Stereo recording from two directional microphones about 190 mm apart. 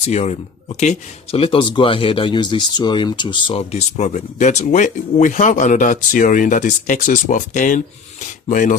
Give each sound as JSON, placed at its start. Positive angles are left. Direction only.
{"t": 0.0, "sound": "speech", "side_deg": 35}